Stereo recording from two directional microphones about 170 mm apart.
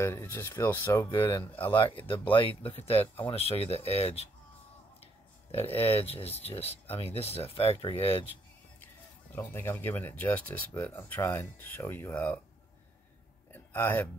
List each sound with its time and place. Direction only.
0.0 s speech: 15° left (ahead or behind)
2.2 s speech: 30° left (ahead or behind)
5.7 s speech: 35° left (ahead or behind)
8.8 s speech: 10° left (ahead or behind)
13.5 s a sound: 15° left (ahead or behind)